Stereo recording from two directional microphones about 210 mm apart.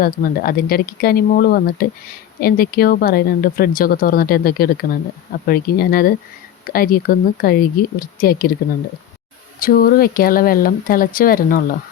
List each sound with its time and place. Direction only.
0.0 s speech: 45° left (ahead or behind)
9.6 s speech: 45° left (ahead or behind)